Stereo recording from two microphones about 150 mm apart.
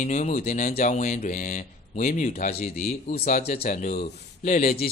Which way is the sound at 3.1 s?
45° left (ahead or behind).